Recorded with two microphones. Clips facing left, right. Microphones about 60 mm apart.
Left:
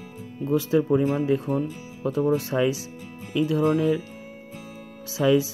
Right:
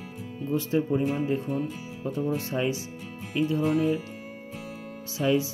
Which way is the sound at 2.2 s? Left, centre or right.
Left.